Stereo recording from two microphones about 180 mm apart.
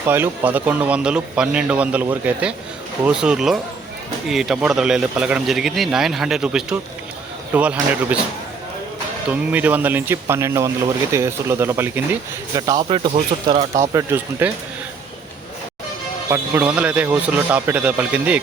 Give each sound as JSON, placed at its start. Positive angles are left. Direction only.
{"t": 0.0, "sound": "speech", "side_deg": -10}
{"t": 9.3, "sound": "speech", "side_deg": -10}
{"t": 12.5, "sound": "speech", "side_deg": -25}
{"t": 13.9, "sound": "speech", "side_deg": -10}
{"t": 16.3, "sound": "speech", "side_deg": -10}